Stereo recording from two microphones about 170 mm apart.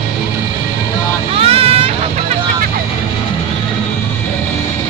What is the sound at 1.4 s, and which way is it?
Vehicle, 35° right (ahead or behind).